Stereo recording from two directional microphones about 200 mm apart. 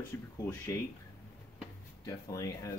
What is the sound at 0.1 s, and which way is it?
Speech, 10° left (ahead or behind).